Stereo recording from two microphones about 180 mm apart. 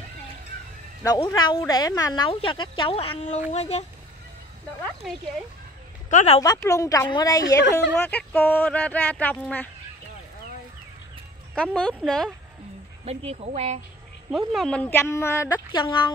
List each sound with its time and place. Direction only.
1.0 s speech: 20° left (ahead or behind); by 3.8 s 35° left (ahead or behind)
5.0 s speech: centre (ahead or behind)
6.0 s speech: 40° left (ahead or behind)
6.4 s speech: 20° left (ahead or behind)
7.7 s speech: 10° left (ahead or behind)
11.5 s speech: 5° left (ahead or behind)
13.0 s speech: 35° right (ahead or behind)
14.5 s speech: 5° left (ahead or behind)
15.8 s speech: 25° left (ahead or behind)